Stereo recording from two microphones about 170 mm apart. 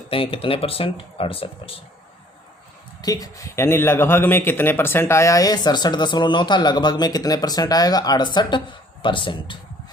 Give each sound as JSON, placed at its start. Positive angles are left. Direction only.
{"t": 0.1, "sound": "speech", "side_deg": 30}
{"t": 3.0, "sound": "speech", "side_deg": 20}